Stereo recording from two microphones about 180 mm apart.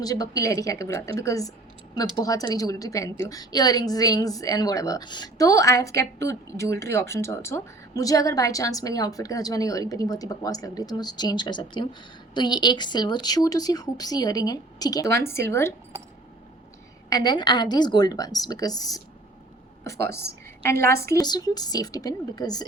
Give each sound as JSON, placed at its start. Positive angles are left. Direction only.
{"t": 0.0, "sound": "a woman's voice", "side_deg": 20}
{"t": 17.1, "sound": "a woman's voice", "side_deg": 20}
{"t": 20.1, "sound": "a woman's voice", "side_deg": 15}